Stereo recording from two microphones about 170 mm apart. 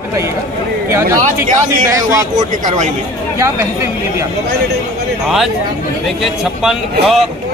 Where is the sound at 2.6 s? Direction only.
45° right (ahead or behind).